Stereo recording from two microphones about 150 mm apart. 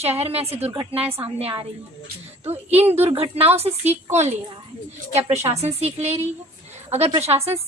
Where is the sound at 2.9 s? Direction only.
45° right (ahead or behind).